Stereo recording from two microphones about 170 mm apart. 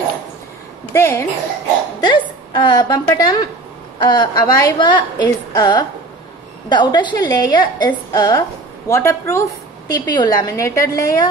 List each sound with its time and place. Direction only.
0.9 s a child's voice: 15° left (ahead or behind)
2.0 s a woman's voice: 25° left (ahead or behind)